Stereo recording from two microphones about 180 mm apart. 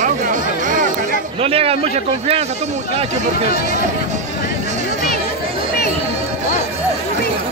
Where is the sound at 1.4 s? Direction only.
35° right (ahead or behind).